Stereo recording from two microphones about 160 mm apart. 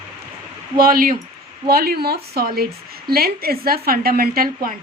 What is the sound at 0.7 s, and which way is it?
Speech, 65° right (ahead or behind).